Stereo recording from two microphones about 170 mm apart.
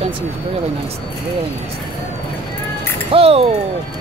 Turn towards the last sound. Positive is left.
turn(degrees=-35)  # may be behind; listen again after turning